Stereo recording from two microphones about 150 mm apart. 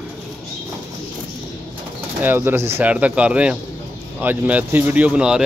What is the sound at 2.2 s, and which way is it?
Speech, 15° right (ahead or behind).